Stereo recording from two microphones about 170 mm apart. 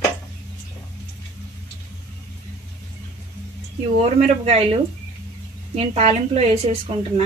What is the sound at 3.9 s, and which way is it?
A woman's voice, 40° right (ahead or behind).